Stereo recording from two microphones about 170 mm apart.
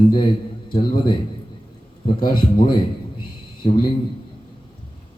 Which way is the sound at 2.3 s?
25° left (ahead or behind).